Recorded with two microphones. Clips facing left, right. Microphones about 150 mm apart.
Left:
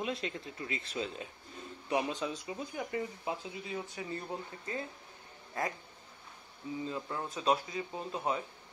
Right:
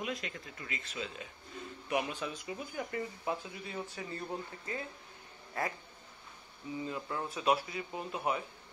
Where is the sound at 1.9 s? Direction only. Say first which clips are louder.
Left 2 dB; 25° left (ahead or behind).